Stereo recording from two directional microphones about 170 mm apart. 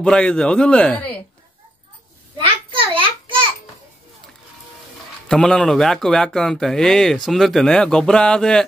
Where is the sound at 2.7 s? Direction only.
30° right (ahead or behind).